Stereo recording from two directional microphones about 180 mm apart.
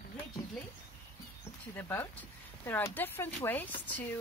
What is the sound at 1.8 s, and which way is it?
Speech, 10° left (ahead or behind).